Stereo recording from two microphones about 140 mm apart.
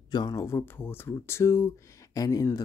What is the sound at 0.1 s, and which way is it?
Speech, 30° left (ahead or behind).